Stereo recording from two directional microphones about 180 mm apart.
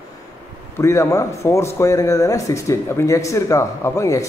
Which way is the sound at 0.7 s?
15° left (ahead or behind).